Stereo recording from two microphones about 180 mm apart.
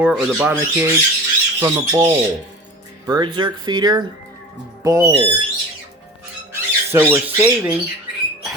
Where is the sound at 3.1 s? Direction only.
25° right (ahead or behind).